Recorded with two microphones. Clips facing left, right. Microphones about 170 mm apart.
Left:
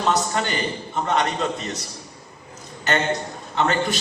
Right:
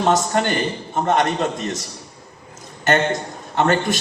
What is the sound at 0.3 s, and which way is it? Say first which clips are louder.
A man's voice: right 5 dB; 55° right (ahead or behind).